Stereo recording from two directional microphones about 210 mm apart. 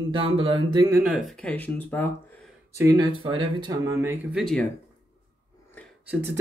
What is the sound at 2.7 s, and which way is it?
Speech, 15° right (ahead or behind).